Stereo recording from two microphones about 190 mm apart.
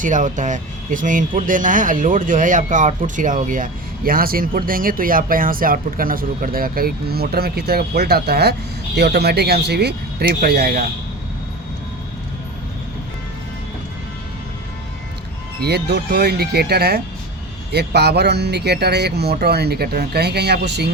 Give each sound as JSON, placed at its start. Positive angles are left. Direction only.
{"t": 0.0, "sound": "speech", "side_deg": -40}
{"t": 15.6, "sound": "speech", "side_deg": -60}